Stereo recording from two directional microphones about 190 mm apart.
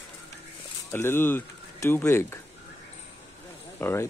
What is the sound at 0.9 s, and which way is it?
Speech, 10° left (ahead or behind).